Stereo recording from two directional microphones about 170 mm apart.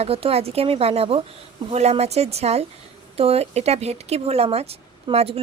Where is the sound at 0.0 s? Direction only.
35° right (ahead or behind).